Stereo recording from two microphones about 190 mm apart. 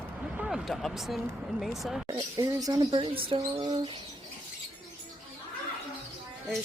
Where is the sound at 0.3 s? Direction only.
Centre (ahead or behind).